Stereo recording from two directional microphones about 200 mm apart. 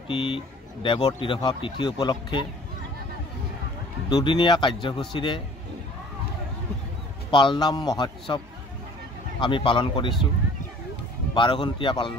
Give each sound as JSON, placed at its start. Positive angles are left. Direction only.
{"t": 0.1, "sound": "speech", "side_deg": 25}
{"t": 4.1, "sound": "speech", "side_deg": 25}
{"t": 7.2, "sound": "speech", "side_deg": 25}
{"t": 9.4, "sound": "speech", "side_deg": 25}
{"t": 11.3, "sound": "speech", "side_deg": 25}